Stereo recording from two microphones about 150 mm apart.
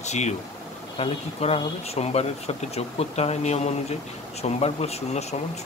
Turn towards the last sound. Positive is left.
turn(degrees=45)  # may be behind; listen again after turning